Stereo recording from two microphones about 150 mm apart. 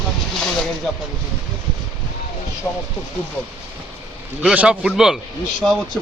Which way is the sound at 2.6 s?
15° left (ahead or behind).